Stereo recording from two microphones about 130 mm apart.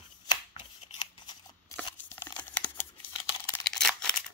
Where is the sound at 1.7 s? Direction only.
15° left (ahead or behind).